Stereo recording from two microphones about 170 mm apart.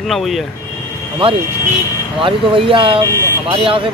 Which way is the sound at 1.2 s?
30° right (ahead or behind).